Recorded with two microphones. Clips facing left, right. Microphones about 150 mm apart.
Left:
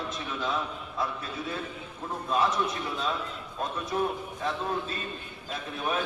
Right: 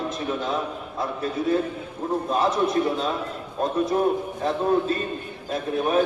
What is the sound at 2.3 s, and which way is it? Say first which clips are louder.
Speech: right 4 dB; 45° right (ahead or behind).